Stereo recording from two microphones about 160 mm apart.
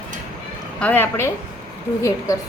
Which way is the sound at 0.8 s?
10° left (ahead or behind).